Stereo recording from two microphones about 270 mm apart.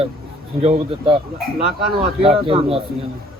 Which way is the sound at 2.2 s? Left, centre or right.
Right.